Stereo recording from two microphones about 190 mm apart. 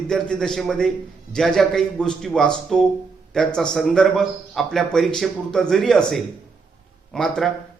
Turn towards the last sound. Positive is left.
turn(degrees=0)  # may be behind; listen again after turning